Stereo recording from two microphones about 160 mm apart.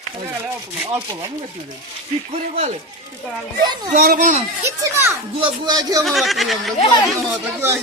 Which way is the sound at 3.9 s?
60° right (ahead or behind).